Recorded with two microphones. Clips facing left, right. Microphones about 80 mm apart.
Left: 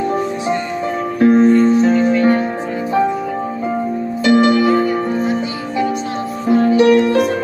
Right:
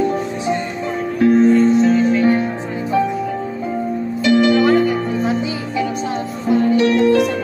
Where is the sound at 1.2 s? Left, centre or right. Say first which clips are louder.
Left 2 dB; left.